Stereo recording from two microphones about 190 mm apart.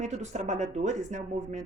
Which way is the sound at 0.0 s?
40° right (ahead or behind).